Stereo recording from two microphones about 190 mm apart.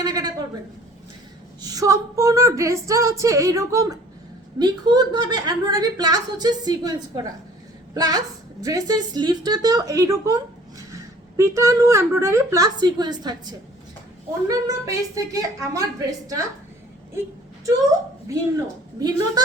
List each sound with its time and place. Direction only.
0.0 s a sound: 20° right (ahead or behind)
1.6 s female singing: 20° right (ahead or behind)
4.6 s a woman's voice: 20° right (ahead or behind)
7.9 s a woman's voice: 20° right (ahead or behind)
14.4 s female singing: 15° right (ahead or behind)
18.9 s a woman's voice: 20° right (ahead or behind)